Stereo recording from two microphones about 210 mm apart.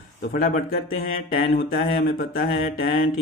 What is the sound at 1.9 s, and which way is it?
Speech, 45° left (ahead or behind).